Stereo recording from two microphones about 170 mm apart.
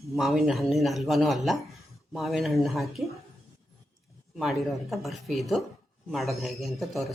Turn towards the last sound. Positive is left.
turn(degrees=0)  # may be behind; listen again after turning